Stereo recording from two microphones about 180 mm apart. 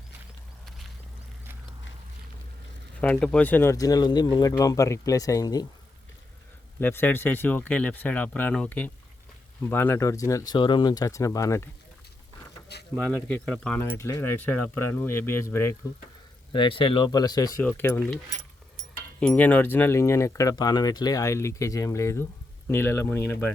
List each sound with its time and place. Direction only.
3.0 s speech: 5° left (ahead or behind)
6.7 s speech: 10° left (ahead or behind)
13.1 s speech: 5° left (ahead or behind)
16.5 s speech: 30° left (ahead or behind)
17.6 s speech: 10° left (ahead or behind)
19.2 s speech: 10° left (ahead or behind)